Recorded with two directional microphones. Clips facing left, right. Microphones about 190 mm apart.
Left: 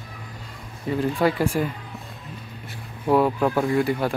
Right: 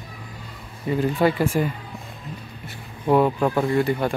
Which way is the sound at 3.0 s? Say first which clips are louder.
Right 1 dB; centre (ahead or behind).